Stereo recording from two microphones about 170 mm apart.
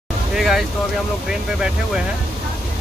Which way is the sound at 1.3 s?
5° right (ahead or behind).